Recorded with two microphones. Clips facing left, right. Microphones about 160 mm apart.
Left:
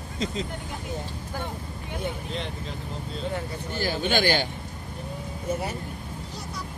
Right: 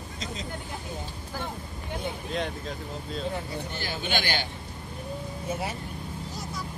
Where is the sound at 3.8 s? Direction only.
40° left (ahead or behind).